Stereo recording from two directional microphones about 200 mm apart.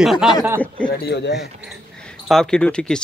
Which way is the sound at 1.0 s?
55° left (ahead or behind).